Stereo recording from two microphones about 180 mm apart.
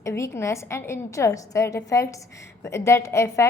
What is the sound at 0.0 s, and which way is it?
A child's voice, 15° left (ahead or behind).